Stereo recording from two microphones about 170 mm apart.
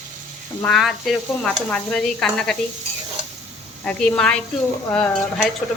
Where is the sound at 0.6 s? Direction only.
Centre (ahead or behind).